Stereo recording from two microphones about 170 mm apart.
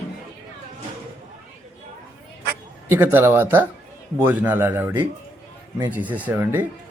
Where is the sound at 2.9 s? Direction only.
10° right (ahead or behind).